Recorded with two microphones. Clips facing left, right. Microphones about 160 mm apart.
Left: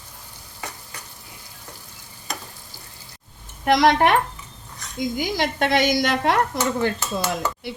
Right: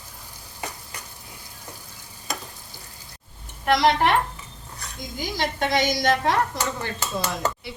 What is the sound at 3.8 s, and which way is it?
Speech, 55° left (ahead or behind).